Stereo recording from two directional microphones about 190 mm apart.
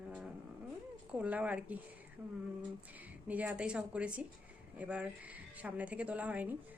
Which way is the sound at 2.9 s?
10° right (ahead or behind).